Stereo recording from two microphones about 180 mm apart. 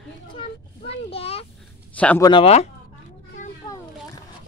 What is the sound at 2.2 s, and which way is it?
Speech, 25° left (ahead or behind).